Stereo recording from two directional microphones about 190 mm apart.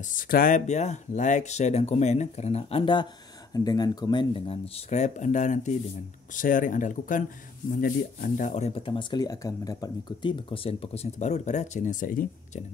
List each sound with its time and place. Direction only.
0.0 s speech: 45° left (ahead or behind)